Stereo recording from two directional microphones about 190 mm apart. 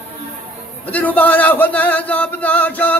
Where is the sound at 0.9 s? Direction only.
10° left (ahead or behind).